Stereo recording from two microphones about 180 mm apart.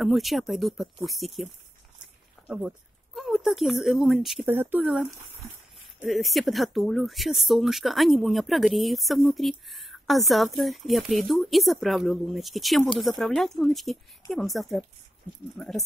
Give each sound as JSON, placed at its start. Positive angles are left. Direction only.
{"t": 0.0, "sound": "speech", "side_deg": 0}
{"t": 4.5, "sound": "speech", "side_deg": -10}